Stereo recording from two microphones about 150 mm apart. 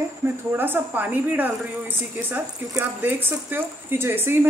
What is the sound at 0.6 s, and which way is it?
Speech, 10° right (ahead or behind).